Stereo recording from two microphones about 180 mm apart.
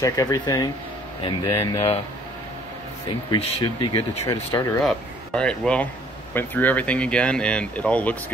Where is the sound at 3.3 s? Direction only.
30° left (ahead or behind).